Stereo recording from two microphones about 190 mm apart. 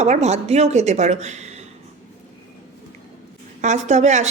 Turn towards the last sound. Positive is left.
turn(degrees=-40)  # may be behind; listen again after turning